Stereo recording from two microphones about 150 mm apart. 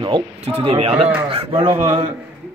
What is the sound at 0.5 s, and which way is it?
A man's voice, 45° right (ahead or behind).